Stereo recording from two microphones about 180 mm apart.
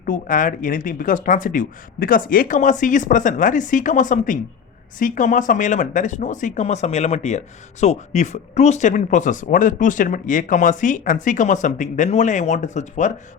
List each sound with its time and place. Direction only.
0.0 s speech: 50° left (ahead or behind)